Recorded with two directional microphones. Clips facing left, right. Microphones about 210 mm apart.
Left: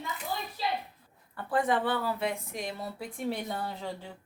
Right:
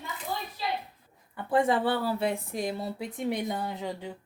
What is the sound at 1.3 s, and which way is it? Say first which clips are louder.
Speech: right 3 dB; 25° right (ahead or behind).